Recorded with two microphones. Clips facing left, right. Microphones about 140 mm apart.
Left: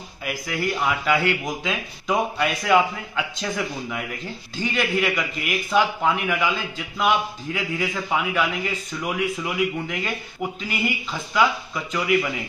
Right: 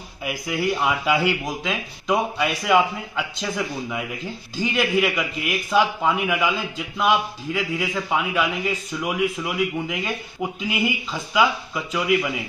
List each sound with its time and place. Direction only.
0.5 s a man's voice: 5° right (ahead or behind)